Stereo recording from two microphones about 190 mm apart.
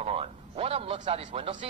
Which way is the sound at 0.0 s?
30° right (ahead or behind).